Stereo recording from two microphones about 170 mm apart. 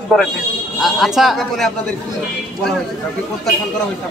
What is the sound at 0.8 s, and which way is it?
Speech, centre (ahead or behind).